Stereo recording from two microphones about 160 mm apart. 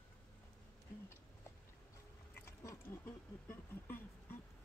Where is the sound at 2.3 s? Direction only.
15° left (ahead or behind).